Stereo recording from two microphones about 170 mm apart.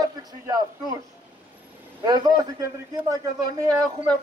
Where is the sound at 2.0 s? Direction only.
25° right (ahead or behind).